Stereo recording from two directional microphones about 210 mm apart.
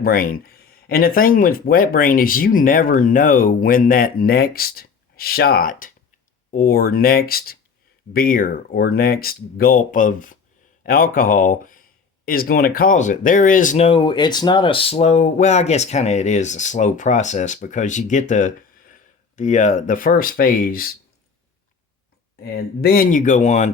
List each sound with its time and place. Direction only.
0.0 s speech: 45° left (ahead or behind)
22.4 s speech: 45° left (ahead or behind)